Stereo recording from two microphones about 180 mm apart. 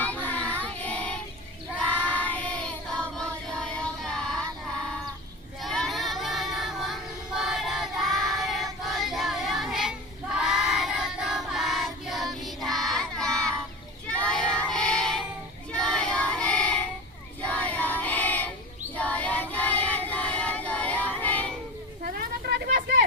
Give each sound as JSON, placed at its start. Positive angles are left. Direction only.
{"t": 0.0, "sound": "child singing", "side_deg": 10}
{"t": 5.6, "sound": "child singing", "side_deg": 0}
{"t": 22.0, "sound": "a sound", "side_deg": -60}